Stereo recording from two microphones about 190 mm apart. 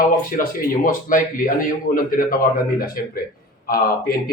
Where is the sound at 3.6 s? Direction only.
50° left (ahead or behind).